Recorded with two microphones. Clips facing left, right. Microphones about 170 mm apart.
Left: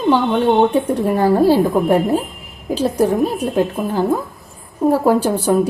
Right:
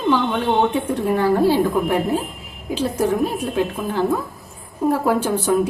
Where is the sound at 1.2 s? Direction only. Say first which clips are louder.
Left 4 dB; 40° left (ahead or behind).